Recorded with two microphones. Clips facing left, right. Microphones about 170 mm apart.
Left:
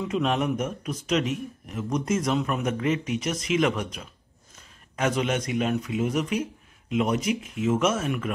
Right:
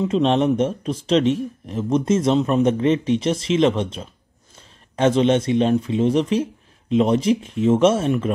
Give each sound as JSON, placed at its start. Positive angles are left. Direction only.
{"t": 0.0, "sound": "speech", "side_deg": -30}